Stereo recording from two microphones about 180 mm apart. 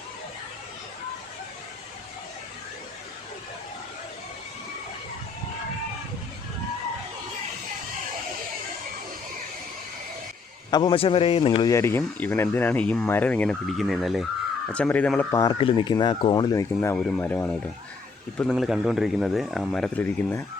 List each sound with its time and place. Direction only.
10.7 s speech: 25° left (ahead or behind)
11.7 s speech: 15° left (ahead or behind)
15.3 s speech: 15° left (ahead or behind)
15.5 s speech: 25° left (ahead or behind)
16.9 s a man's voice: 5° left (ahead or behind)